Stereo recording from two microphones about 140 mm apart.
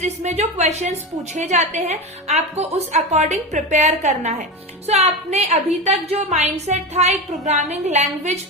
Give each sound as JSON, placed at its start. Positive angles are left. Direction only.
{"t": 0.0, "sound": "a woman's voice", "side_deg": -50}